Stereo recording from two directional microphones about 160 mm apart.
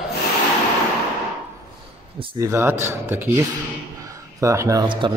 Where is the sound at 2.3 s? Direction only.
15° right (ahead or behind).